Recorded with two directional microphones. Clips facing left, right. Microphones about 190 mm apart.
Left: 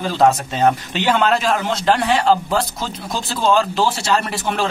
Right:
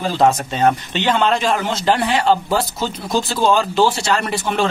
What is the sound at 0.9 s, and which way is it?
A man's voice, 5° left (ahead or behind).